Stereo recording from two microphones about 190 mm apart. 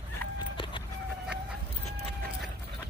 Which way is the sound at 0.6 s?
25° left (ahead or behind).